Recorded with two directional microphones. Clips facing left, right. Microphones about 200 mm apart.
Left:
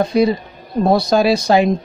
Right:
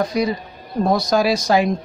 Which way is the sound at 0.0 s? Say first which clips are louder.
Left 5 dB; 30° left (ahead or behind).